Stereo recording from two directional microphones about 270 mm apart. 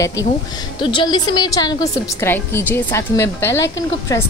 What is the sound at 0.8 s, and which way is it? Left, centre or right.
A woman's voice, centre.